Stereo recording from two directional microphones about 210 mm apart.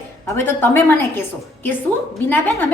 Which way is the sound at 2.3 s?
10° left (ahead or behind).